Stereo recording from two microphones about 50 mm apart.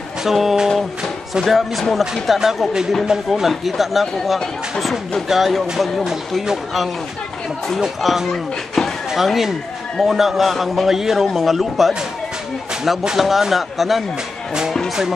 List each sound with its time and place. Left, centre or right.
0.2 s speech: centre
8.0 s speech: centre
9.1 s speech: centre
13.0 s speech: centre